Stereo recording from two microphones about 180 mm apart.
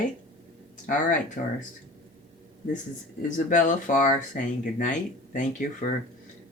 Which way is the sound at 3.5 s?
45° left (ahead or behind).